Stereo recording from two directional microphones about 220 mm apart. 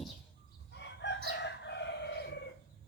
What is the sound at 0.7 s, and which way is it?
Chicken, 50° left (ahead or behind).